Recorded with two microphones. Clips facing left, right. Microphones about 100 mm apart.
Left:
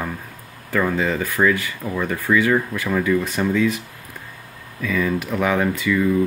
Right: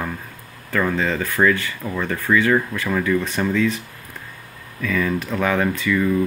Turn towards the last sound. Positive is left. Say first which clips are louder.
# even
turn(degrees=10)  # may be behind; listen again after turning